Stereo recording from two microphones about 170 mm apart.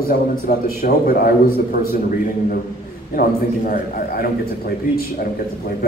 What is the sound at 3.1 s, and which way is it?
A man's voice, 55° left (ahead or behind).